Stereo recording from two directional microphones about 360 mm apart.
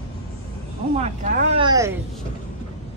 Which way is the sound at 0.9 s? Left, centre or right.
Centre.